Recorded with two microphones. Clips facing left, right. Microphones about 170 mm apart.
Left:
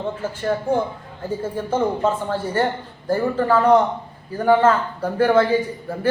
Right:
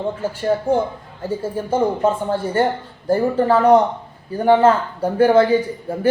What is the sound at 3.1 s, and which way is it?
Speech, 20° right (ahead or behind).